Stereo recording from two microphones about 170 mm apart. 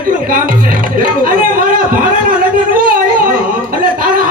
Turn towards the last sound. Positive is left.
turn(degrees=-55)  # may be behind; listen again after turning